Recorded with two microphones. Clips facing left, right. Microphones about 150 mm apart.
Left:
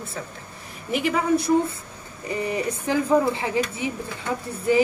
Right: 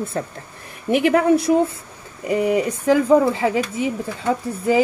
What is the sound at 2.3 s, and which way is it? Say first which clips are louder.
Speech: right 8 dB; 90° right.